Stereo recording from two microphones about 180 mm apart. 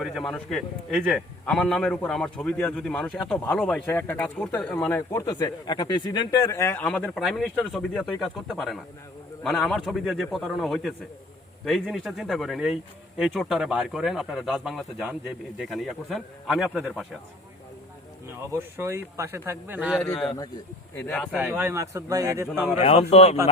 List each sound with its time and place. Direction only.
0.0 s a man's voice: centre (ahead or behind)
18.5 s a man's voice: 15° right (ahead or behind)
20.0 s a man's voice: 5° left (ahead or behind)
21.2 s a man's voice: 5° right (ahead or behind)
22.8 s speech: 35° left (ahead or behind)